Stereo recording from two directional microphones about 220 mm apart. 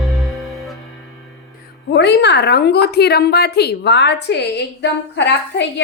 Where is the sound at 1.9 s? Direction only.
50° left (ahead or behind).